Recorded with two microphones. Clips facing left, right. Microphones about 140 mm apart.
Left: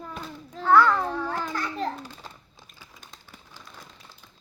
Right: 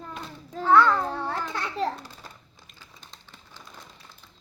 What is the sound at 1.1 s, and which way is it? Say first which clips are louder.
Babbling: left 1 dB; 30° right (ahead or behind).